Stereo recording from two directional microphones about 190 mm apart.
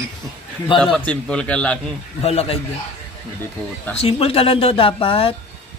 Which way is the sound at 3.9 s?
30° left (ahead or behind).